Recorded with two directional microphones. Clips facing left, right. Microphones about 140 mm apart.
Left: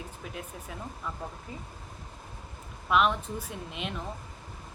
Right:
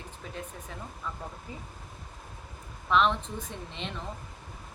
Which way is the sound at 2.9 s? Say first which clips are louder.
Even; 10° left (ahead or behind).